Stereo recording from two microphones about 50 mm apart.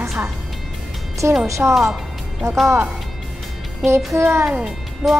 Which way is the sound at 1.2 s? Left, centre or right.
Right.